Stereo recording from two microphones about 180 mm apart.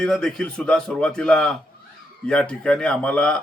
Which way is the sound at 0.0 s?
5° left (ahead or behind).